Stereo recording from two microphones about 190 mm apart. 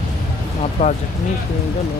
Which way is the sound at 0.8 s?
30° left (ahead or behind).